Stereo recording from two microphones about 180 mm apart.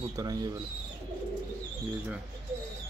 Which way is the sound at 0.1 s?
20° right (ahead or behind).